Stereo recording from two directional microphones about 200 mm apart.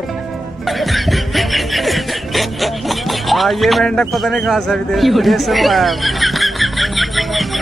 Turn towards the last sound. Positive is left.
turn(degrees=0)  # may be behind; listen again after turning